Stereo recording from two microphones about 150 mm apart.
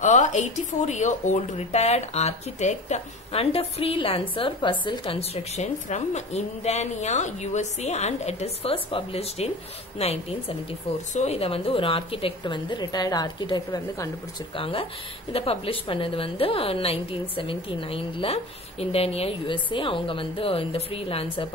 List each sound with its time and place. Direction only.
0.0 s a woman's voice: 55° left (ahead or behind); by 14.1 s 20° left (ahead or behind)
14.5 s a woman's voice: 35° left (ahead or behind)